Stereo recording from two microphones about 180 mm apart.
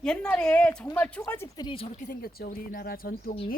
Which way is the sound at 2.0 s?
55° left (ahead or behind).